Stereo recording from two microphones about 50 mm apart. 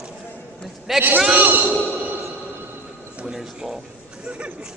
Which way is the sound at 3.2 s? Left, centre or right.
Centre.